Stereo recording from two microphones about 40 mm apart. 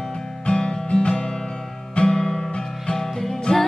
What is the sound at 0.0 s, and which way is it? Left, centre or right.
Guitar, centre.